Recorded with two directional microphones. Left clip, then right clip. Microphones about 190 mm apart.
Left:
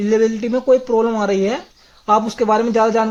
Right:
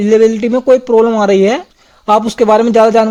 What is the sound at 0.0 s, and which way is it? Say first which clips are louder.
Speech: right 7 dB; 40° right (ahead or behind).